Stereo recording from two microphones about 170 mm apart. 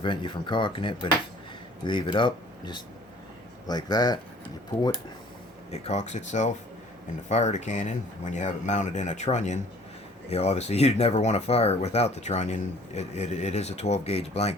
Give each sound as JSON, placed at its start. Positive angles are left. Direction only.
{"t": 0.0, "sound": "speech", "side_deg": 30}
{"t": 5.7, "sound": "speech", "side_deg": 40}